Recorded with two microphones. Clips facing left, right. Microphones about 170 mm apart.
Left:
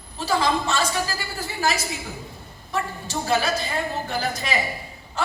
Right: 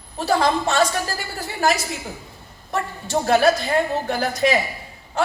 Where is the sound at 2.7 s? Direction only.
60° right (ahead or behind).